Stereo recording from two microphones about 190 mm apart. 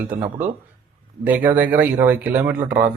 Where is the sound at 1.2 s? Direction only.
10° right (ahead or behind).